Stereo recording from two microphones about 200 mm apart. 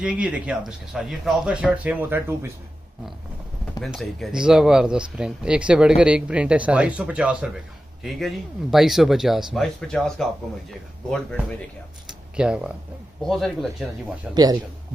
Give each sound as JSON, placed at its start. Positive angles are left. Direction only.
{"t": 0.0, "sound": "speech", "side_deg": -5}
{"t": 3.8, "sound": "speech", "side_deg": 0}
{"t": 12.4, "sound": "speech", "side_deg": -5}
{"t": 14.3, "sound": "a man's voice", "side_deg": -20}